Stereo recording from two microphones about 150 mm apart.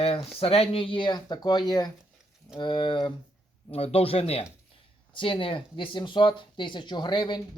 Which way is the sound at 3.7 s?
40° left (ahead or behind).